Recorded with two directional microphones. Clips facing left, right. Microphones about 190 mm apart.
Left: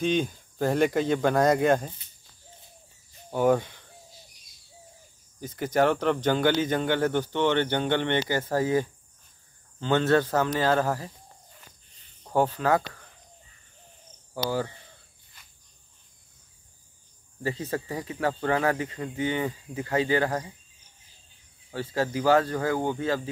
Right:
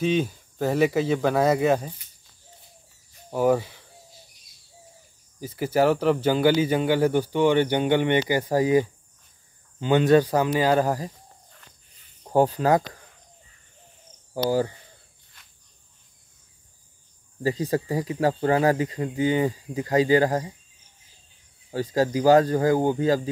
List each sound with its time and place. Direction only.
0.0 s speech: 5° right (ahead or behind)
3.3 s speech: 5° right (ahead or behind)
5.4 s speech: 5° right (ahead or behind)
12.4 s speech: 40° right (ahead or behind)
17.4 s speech: 35° right (ahead or behind)
21.7 s speech: 40° right (ahead or behind)